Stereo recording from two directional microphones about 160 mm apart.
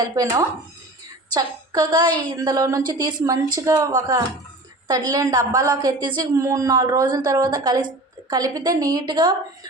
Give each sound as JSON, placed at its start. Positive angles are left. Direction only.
{"t": 0.0, "sound": "a woman's voice", "side_deg": -20}